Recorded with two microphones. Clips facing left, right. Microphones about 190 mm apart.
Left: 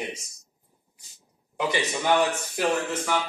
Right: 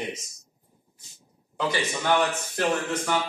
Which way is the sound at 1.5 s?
15° left (ahead or behind).